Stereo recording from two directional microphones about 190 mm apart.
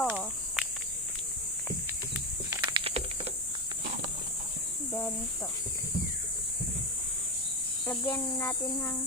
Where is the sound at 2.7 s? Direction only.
30° right (ahead or behind).